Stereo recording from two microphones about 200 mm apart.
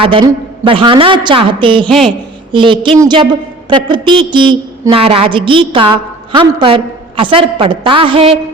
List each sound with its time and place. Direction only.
0.0 s a woman's voice: 25° right (ahead or behind)